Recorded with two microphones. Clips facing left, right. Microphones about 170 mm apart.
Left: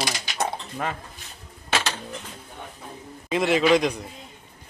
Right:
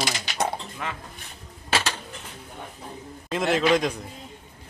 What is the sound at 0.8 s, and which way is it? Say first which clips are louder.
Speech: left 6 dB; 45° left (ahead or behind).